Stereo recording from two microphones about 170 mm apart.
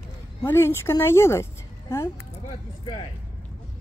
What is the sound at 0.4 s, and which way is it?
A woman's voice, 15° left (ahead or behind).